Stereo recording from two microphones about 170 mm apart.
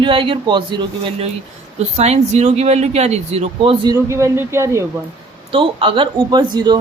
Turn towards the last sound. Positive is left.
turn(degrees=-25)  # may be behind; listen again after turning